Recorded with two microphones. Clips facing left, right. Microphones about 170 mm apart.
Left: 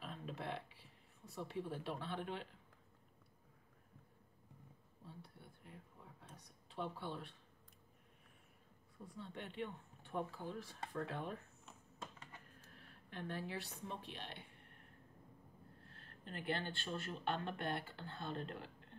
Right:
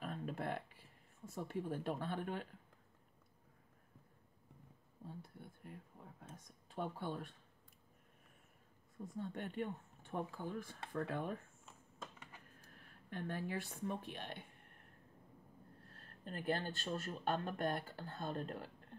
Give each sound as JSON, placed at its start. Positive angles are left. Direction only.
{"t": 0.0, "sound": "a woman's voice", "side_deg": -50}
{"t": 5.0, "sound": "a sound", "side_deg": -45}
{"t": 6.2, "sound": "speech", "side_deg": -45}
{"t": 9.0, "sound": "speech", "side_deg": -45}
{"t": 12.7, "sound": "a woman's voice", "side_deg": -50}
{"t": 15.9, "sound": "speech", "side_deg": -45}